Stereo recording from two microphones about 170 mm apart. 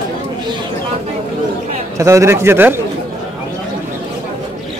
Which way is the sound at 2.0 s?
20° right (ahead or behind).